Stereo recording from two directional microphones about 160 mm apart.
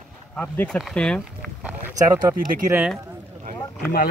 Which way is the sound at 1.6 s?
10° right (ahead or behind).